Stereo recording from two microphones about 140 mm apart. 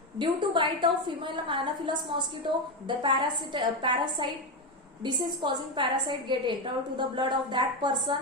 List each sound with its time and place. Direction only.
0.2 s a woman's voice: 35° right (ahead or behind)